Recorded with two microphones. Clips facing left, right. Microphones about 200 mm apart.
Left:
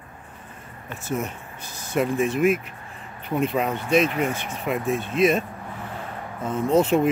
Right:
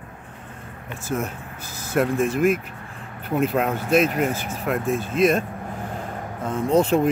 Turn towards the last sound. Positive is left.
turn(degrees=0)  # may be behind; listen again after turning